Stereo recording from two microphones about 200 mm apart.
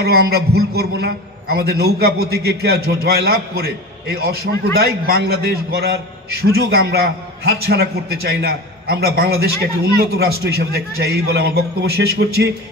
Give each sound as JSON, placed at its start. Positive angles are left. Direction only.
{"t": 0.0, "sound": "a man's voice", "side_deg": -55}